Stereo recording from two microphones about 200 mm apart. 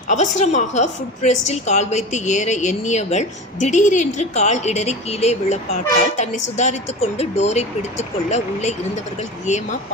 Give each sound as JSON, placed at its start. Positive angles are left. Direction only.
{"t": 0.1, "sound": "a woman's voice", "side_deg": 35}